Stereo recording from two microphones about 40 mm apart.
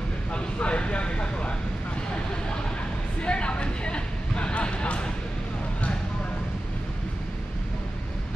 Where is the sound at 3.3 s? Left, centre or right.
Left.